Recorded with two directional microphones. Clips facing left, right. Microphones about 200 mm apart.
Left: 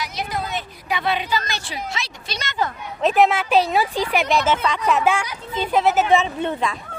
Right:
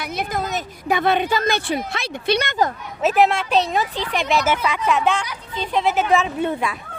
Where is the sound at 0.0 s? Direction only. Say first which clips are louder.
Right 2 dB; 55° right (ahead or behind).